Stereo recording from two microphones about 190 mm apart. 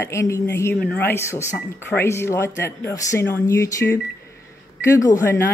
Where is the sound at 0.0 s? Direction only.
15° left (ahead or behind).